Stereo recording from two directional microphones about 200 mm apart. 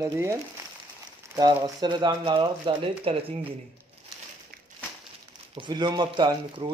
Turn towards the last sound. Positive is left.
turn(degrees=-20)  # may be behind; listen again after turning